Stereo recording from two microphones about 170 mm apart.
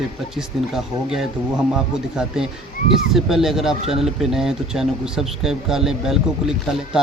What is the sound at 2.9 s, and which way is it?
Speech, centre (ahead or behind).